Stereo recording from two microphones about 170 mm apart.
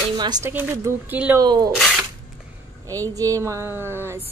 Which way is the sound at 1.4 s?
25° right (ahead or behind).